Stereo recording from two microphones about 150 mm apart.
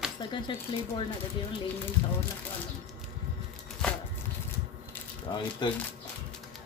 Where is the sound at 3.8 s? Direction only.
5° left (ahead or behind).